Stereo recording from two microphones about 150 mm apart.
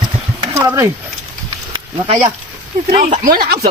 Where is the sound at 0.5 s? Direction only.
20° right (ahead or behind).